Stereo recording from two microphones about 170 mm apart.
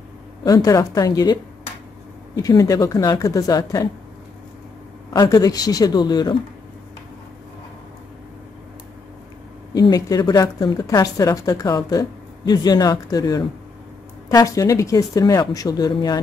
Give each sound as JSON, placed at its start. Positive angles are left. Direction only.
{"t": 0.4, "sound": "a woman's voice", "side_deg": 20}
{"t": 2.4, "sound": "a woman's voice", "side_deg": 20}
{"t": 5.2, "sound": "a woman's voice", "side_deg": 20}
{"t": 9.8, "sound": "a woman's voice", "side_deg": 20}